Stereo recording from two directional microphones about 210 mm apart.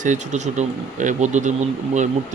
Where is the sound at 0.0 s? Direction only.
35° right (ahead or behind).